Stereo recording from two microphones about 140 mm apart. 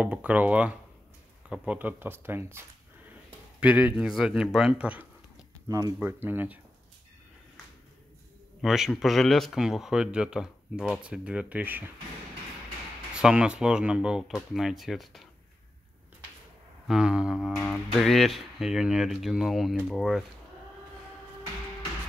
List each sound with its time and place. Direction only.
0.0 s speech: 10° right (ahead or behind)
3.6 s speech: 10° right (ahead or behind)
5.7 s speech: 25° right (ahead or behind)
5.9 s speech: 15° right (ahead or behind)
8.5 s speech: centre (ahead or behind)
13.1 s speech: 5° right (ahead or behind)
16.8 s speech: 5° right (ahead or behind)